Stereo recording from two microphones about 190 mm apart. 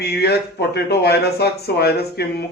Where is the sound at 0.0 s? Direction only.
55° left (ahead or behind).